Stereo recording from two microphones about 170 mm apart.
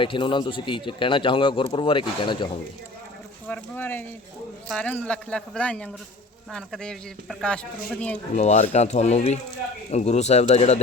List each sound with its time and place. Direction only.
0.0 s speech: 30° left (ahead or behind)
3.4 s speech: 10° left (ahead or behind)
8.4 s speech: 45° left (ahead or behind)